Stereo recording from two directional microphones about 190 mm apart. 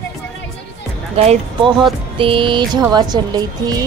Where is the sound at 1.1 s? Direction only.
30° right (ahead or behind).